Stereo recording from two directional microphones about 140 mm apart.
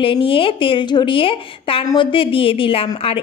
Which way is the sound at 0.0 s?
40° left (ahead or behind).